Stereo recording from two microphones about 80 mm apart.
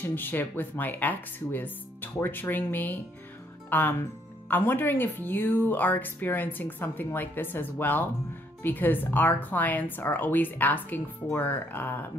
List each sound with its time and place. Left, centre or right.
0.0 s speech: left